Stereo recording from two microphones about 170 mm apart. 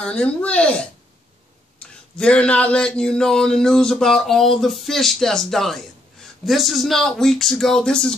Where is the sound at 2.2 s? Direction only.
5° left (ahead or behind).